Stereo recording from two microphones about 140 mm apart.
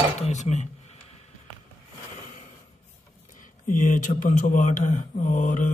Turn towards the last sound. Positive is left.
turn(degrees=65)  # may be behind; listen again after turning